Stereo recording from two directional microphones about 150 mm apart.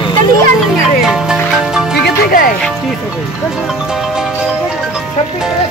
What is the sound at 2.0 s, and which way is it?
Music, 80° left.